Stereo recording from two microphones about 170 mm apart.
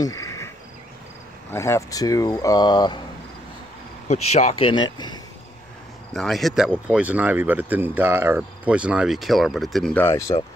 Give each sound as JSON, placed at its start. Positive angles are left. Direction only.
{"t": 0.0, "sound": "cricket", "side_deg": 20}
{"t": 1.5, "sound": "speech", "side_deg": 15}
{"t": 4.1, "sound": "speech", "side_deg": 40}
{"t": 6.1, "sound": "speech", "side_deg": 0}
{"t": 10.0, "sound": "speech", "side_deg": 20}